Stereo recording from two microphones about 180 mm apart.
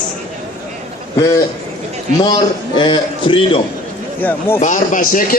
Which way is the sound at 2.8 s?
25° left (ahead or behind).